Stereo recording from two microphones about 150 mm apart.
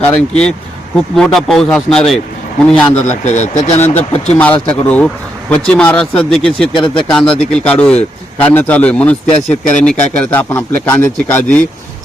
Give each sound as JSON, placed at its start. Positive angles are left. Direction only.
{"t": 0.0, "sound": "speech", "side_deg": 5}
{"t": 2.9, "sound": "speech", "side_deg": 50}
{"t": 3.8, "sound": "speech", "side_deg": 15}
{"t": 6.7, "sound": "speech", "side_deg": 35}
{"t": 7.1, "sound": "speech", "side_deg": 5}